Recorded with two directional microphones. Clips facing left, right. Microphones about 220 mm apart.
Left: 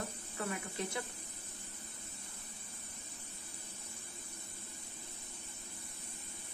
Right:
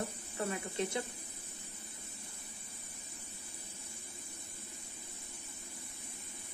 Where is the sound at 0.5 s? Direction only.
20° right (ahead or behind).